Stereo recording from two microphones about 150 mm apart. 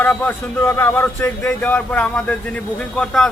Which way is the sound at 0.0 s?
10° left (ahead or behind).